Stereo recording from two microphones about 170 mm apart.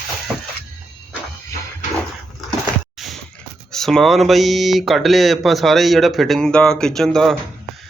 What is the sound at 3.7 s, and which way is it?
Speech, centre (ahead or behind).